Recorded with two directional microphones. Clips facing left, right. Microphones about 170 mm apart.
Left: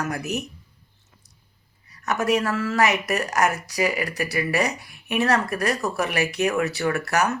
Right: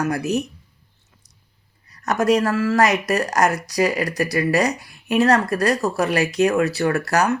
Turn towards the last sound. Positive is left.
turn(degrees=-35)  # may be behind; listen again after turning